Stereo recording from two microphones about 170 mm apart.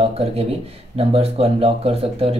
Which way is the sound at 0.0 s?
35° right (ahead or behind).